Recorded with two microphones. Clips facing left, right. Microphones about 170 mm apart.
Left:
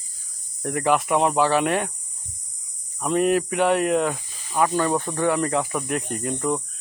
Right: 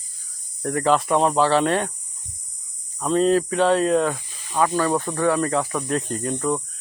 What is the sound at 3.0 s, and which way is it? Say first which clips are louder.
Speech: right 2 dB; 15° left (ahead or behind).